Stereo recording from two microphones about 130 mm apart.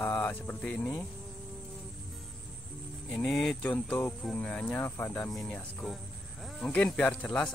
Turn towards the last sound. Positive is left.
turn(degrees=5)  # may be behind; listen again after turning